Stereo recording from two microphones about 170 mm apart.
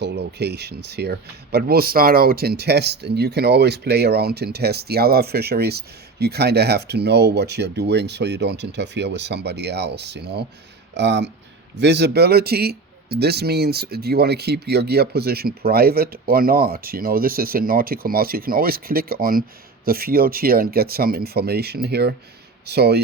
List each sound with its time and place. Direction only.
0.0 s speech: 75° right (ahead or behind)
10.9 s speech: 90° right; by 23.0 s 70° right (ahead or behind)